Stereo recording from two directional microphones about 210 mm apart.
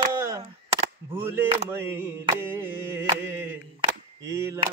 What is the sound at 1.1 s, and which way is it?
Speech, 10° right (ahead or behind).